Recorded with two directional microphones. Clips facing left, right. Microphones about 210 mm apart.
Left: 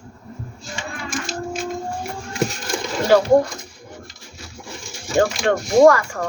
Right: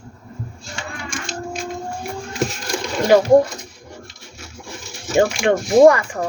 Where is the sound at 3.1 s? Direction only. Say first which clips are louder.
Right 1 dB; 15° right (ahead or behind).